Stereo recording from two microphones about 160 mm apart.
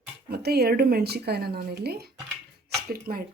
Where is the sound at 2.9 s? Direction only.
70° right (ahead or behind).